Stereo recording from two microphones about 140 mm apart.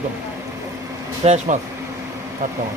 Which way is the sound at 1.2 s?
55° right (ahead or behind).